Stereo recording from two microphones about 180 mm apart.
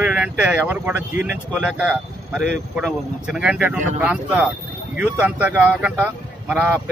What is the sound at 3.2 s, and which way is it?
Speech, 5° right (ahead or behind).